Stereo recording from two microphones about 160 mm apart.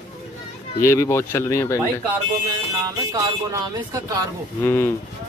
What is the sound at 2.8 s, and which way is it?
Speech, 25° right (ahead or behind).